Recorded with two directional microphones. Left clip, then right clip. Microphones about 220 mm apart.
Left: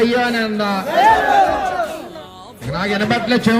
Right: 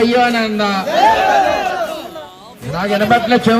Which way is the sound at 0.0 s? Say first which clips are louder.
Right 3 dB; 20° right (ahead or behind).